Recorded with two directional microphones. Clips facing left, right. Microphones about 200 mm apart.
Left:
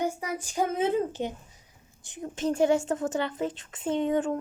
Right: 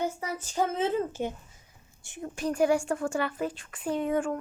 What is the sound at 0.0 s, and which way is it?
A woman's voice, 15° left (ahead or behind).